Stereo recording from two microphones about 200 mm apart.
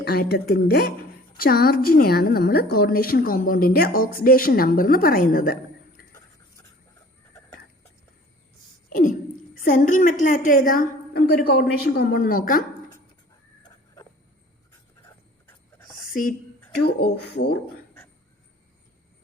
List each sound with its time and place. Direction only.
0.0 s a woman's voice: 50° left (ahead or behind)
6.0 s a sound: 45° left (ahead or behind)
8.9 s a woman's voice: 40° left (ahead or behind)
16.7 s a woman's voice: 55° left (ahead or behind)